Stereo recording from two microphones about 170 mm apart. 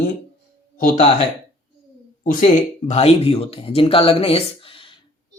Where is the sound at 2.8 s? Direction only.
35° left (ahead or behind).